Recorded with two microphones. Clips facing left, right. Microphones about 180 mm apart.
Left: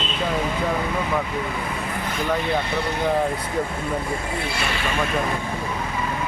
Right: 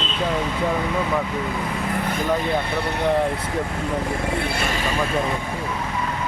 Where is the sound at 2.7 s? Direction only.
60° right (ahead or behind).